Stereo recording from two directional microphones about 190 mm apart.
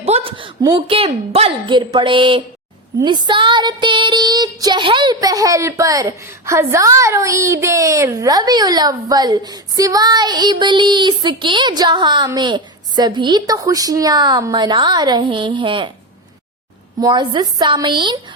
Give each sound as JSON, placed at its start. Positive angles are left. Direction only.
{"t": 0.0, "sound": "a woman's voice", "side_deg": -30}
{"t": 3.0, "sound": "child singing", "side_deg": -25}
{"t": 17.0, "sound": "child singing", "side_deg": -20}